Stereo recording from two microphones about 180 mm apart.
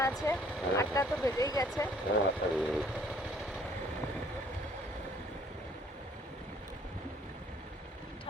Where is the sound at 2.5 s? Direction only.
5° right (ahead or behind).